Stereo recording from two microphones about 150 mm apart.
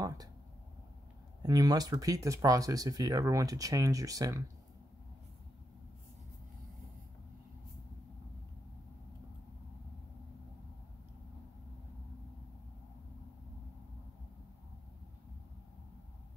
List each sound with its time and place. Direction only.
1.4 s speech: 25° right (ahead or behind)